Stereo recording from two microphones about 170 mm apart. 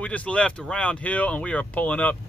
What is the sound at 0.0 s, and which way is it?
Speech, 5° left (ahead or behind).